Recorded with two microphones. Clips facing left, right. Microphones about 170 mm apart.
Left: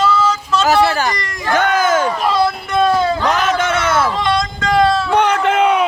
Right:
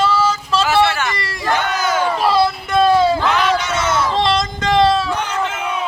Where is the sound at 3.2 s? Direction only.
45° left (ahead or behind).